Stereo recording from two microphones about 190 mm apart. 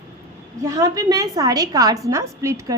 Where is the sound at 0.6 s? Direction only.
20° right (ahead or behind).